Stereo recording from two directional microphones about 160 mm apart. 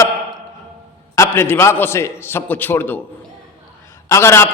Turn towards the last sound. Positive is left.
turn(degrees=15)  # may be behind; listen again after turning